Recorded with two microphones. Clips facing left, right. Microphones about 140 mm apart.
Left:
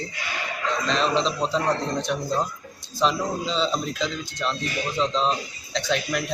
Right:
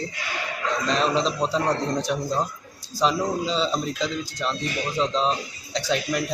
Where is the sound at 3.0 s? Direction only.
5° right (ahead or behind).